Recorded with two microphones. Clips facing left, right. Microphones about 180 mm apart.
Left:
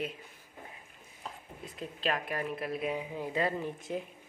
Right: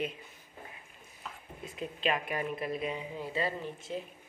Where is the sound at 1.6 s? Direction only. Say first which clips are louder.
Right 2 dB; centre (ahead or behind); by 4.0 s 15° left (ahead or behind).